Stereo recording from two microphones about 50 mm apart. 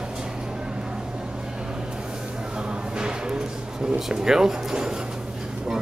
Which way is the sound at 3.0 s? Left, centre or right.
Centre.